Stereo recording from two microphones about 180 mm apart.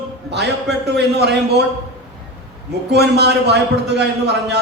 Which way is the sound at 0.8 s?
70° right (ahead or behind).